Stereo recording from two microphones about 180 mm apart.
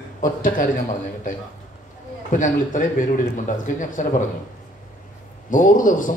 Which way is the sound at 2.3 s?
45° left (ahead or behind).